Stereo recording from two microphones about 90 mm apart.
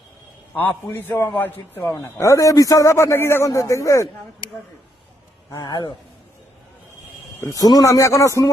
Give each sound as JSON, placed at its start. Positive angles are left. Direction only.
{"t": 0.5, "sound": "a man's voice", "side_deg": 20}
{"t": 1.9, "sound": "a man's voice", "side_deg": 35}
{"t": 5.5, "sound": "speech", "side_deg": 45}
{"t": 7.4, "sound": "a man's voice", "side_deg": 40}